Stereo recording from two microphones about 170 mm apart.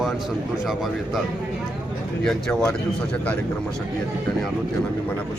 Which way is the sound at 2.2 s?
5° left (ahead or behind).